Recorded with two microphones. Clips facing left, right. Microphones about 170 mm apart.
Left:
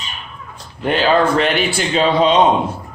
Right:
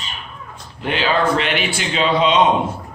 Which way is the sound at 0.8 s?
45° left (ahead or behind).